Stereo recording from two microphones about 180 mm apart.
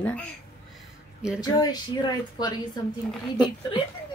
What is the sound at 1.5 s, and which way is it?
A woman's voice, 20° left (ahead or behind).